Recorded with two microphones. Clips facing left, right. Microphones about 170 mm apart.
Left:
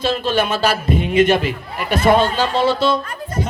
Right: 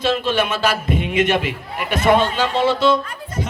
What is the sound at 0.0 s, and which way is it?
Speech, 35° left (ahead or behind).